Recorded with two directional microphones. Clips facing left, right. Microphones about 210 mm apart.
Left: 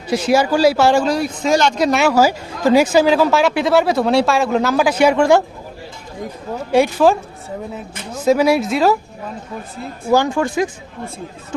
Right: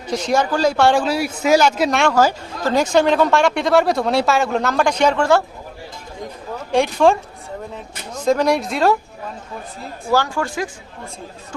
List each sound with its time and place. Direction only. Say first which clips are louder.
0.1 s speech: left 4 dB; 10° left (ahead or behind)
6.7 s speech: left 2 dB; 5° left (ahead or behind)
10.1 s speech: left 4 dB; 20° left (ahead or behind)